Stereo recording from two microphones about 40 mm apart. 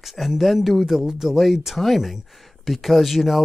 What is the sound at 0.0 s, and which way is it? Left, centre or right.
Speech, centre.